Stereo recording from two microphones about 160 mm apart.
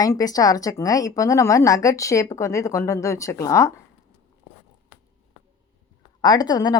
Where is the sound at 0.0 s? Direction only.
25° left (ahead or behind).